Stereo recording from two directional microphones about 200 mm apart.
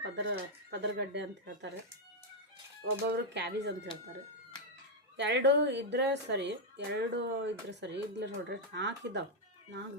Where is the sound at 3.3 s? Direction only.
60° right (ahead or behind).